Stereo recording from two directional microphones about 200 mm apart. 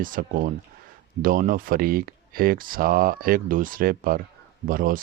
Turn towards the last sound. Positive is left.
turn(degrees=-45)  # may be behind; listen again after turning